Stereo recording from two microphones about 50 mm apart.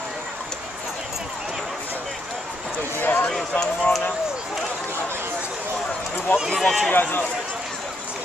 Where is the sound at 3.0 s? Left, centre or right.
Left.